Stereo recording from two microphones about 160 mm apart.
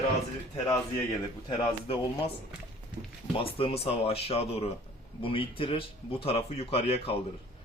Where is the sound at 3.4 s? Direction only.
35° left (ahead or behind).